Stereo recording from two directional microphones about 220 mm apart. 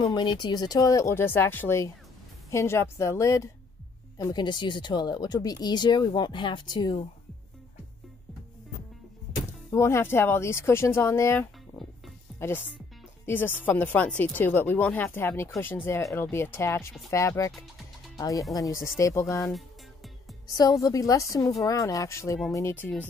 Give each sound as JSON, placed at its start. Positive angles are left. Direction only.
{"t": 0.0, "sound": "speech", "side_deg": 20}
{"t": 9.7, "sound": "speech", "side_deg": 10}
{"t": 20.8, "sound": "speech", "side_deg": 15}